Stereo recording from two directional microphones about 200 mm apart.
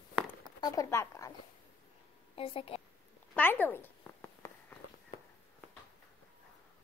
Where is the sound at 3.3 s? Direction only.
10° left (ahead or behind).